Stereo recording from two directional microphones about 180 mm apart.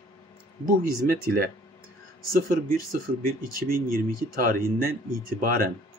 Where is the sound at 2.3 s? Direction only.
50° right (ahead or behind).